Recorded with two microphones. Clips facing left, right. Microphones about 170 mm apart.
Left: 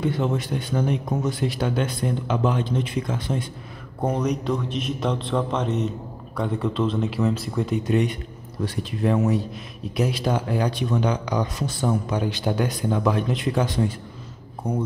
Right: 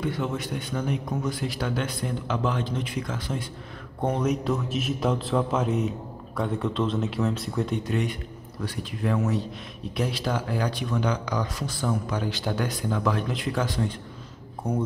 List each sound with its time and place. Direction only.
0.0 s speech: 30° left (ahead or behind)
4.0 s a man's voice: centre (ahead or behind)
8.6 s speech: 20° left (ahead or behind)
9.9 s speech: 10° left (ahead or behind)
10.2 s speech: 20° left (ahead or behind)
14.7 s a man's voice: centre (ahead or behind)